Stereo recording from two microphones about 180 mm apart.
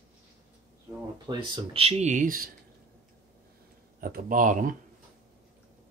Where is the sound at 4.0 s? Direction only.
50° right (ahead or behind).